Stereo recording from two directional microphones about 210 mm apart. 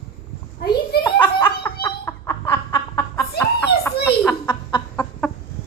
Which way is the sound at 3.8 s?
10° left (ahead or behind).